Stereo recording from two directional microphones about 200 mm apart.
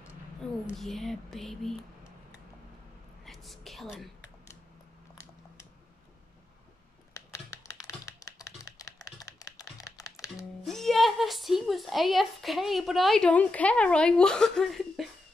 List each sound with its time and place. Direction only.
0.7 s whispering: centre (ahead or behind)
3.3 s whispering: centre (ahead or behind)
5.1 s a sound: 15° left (ahead or behind)
7.2 s computer keyboard: 15° left (ahead or behind)
10.6 s a woman's voice: centre (ahead or behind)